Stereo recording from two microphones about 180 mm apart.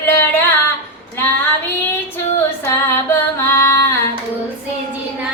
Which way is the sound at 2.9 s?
15° left (ahead or behind).